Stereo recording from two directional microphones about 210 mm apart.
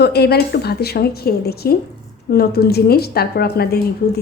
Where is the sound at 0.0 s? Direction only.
50° left (ahead or behind).